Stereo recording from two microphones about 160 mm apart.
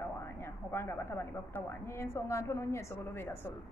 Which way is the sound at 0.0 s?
15° left (ahead or behind).